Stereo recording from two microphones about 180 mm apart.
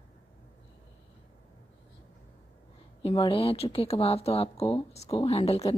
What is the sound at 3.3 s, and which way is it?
Speech, 35° left (ahead or behind).